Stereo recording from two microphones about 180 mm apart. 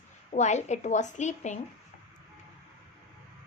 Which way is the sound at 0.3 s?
40° left (ahead or behind).